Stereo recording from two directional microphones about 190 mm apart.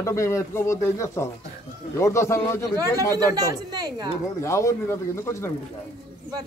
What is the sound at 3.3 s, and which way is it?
Speech, 20° right (ahead or behind).